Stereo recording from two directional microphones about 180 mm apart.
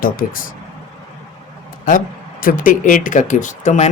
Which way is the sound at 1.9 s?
50° left (ahead or behind).